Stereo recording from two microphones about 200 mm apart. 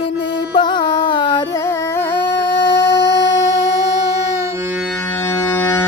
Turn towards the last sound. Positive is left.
turn(degrees=10)  # may be behind; listen again after turning